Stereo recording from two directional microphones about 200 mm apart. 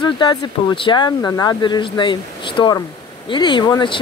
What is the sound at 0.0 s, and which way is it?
Speech, 20° left (ahead or behind).